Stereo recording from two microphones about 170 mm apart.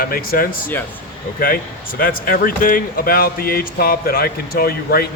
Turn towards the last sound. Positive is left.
turn(degrees=65)  # may be behind; listen again after turning